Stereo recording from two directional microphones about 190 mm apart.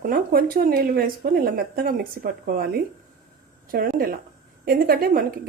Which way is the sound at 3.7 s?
50° right (ahead or behind).